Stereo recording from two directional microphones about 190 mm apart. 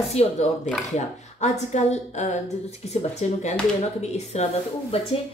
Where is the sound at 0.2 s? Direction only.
35° left (ahead or behind).